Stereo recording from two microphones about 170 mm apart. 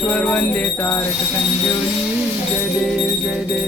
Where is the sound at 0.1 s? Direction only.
5° left (ahead or behind).